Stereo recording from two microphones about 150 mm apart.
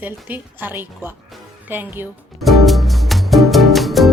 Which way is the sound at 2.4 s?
Centre (ahead or behind).